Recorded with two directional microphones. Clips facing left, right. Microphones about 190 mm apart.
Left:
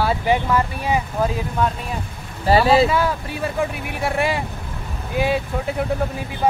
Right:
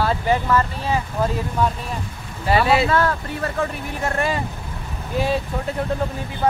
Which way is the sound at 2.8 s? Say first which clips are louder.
Right 1 dB; 5° left (ahead or behind).